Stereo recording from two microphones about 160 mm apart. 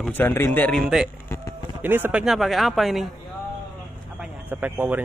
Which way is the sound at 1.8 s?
10° right (ahead or behind).